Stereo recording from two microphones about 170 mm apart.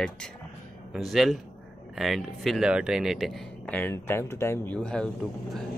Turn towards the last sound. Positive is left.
turn(degrees=5)  # may be behind; listen again after turning